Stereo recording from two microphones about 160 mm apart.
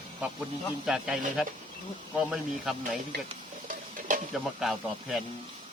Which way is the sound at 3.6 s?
55° right (ahead or behind).